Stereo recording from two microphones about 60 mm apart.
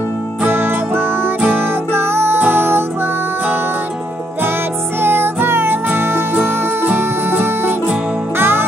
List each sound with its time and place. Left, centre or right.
0.5 s music: right
5.0 s music: right